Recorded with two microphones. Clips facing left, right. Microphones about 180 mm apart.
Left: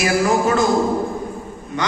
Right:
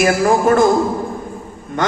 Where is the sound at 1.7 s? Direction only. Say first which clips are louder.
Right 4 dB; 50° right (ahead or behind).